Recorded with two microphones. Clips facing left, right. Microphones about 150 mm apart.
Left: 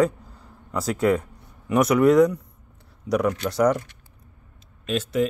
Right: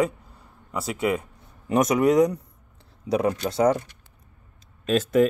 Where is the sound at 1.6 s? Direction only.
25° right (ahead or behind).